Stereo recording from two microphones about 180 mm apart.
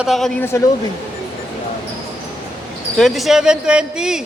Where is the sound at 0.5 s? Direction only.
15° left (ahead or behind).